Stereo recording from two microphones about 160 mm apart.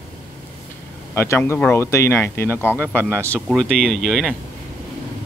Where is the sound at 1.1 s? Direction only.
15° left (ahead or behind).